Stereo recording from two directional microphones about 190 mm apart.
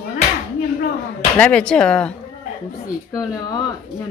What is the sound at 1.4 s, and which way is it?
Speech, 5° left (ahead or behind).